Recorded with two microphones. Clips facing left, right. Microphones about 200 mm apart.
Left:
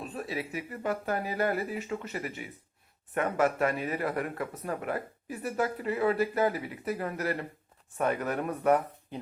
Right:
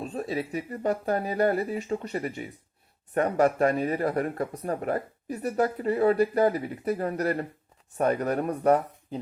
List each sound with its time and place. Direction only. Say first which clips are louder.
0.0 s speech: right 5 dB; 40° right (ahead or behind)